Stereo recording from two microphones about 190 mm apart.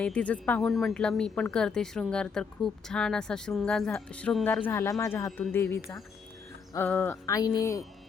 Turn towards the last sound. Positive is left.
turn(degrees=15)  # may be behind; listen again after turning